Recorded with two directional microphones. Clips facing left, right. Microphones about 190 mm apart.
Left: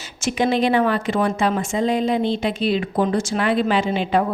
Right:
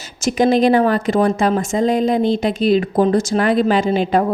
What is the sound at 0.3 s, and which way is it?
A woman's voice, 40° right (ahead or behind).